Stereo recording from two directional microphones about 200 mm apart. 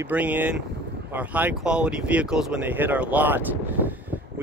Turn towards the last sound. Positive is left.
turn(degrees=-10)  # may be behind; listen again after turning